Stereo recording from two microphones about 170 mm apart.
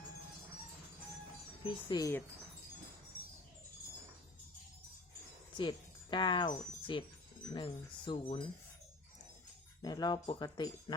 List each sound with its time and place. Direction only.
1.6 s speech: 25° left (ahead or behind)
5.5 s speech: 30° left (ahead or behind)
9.8 s speech: 25° left (ahead or behind)